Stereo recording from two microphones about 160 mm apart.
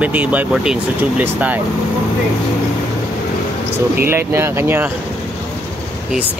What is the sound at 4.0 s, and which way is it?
Speech, 15° right (ahead or behind).